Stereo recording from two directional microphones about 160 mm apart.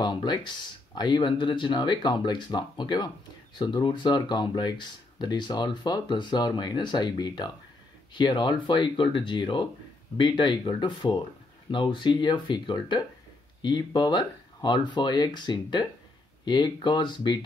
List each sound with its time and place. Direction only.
0.0 s speech: 30° left (ahead or behind)